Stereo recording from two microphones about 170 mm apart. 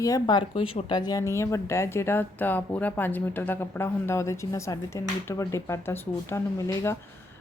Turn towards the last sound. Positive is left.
turn(degrees=15)  # may be behind; listen again after turning